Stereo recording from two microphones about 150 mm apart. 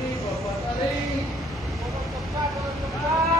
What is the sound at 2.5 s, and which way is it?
Vehicle, centre (ahead or behind).